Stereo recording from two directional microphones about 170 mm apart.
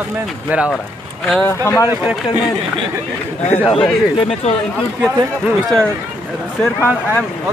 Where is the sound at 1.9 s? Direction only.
10° right (ahead or behind).